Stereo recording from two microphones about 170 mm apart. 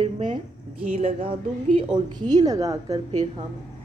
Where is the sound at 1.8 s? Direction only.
25° right (ahead or behind).